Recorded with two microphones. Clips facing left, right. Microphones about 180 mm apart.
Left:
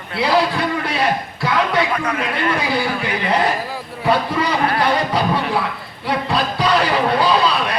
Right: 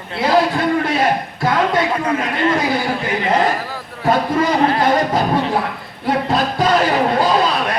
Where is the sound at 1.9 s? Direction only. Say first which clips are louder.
Right 2 dB; 25° right (ahead or behind).